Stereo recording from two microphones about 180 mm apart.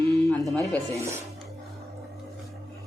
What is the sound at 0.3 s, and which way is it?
Music, centre (ahead or behind).